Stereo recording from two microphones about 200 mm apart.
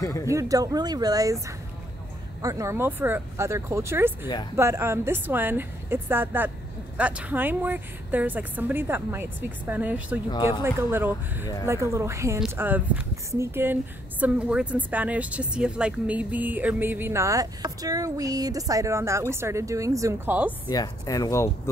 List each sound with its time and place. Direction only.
0.0 s speech: 15° left (ahead or behind)
0.3 s speech: 15° right (ahead or behind)
2.4 s speech: 15° right (ahead or behind)
20.7 s speech: 20° left (ahead or behind)